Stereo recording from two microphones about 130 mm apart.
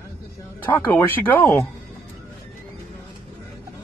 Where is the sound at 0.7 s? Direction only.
15° left (ahead or behind).